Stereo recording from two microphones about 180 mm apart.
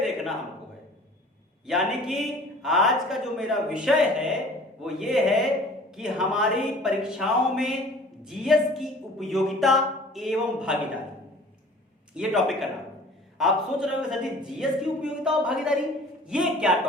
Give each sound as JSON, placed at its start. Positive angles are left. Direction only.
{"t": 0.0, "sound": "a sound", "side_deg": 0}
{"t": 1.6, "sound": "a man's voice", "side_deg": 0}
{"t": 12.1, "sound": "a man's voice", "side_deg": 0}